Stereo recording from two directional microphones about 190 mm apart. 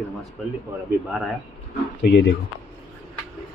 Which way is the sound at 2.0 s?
60° left (ahead or behind).